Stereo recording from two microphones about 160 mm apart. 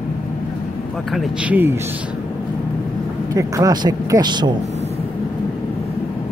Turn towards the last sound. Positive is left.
turn(degrees=-25)  # may be behind; listen again after turning